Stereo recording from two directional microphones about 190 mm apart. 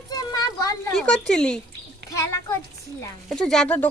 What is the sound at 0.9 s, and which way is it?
Speech, 5° left (ahead or behind).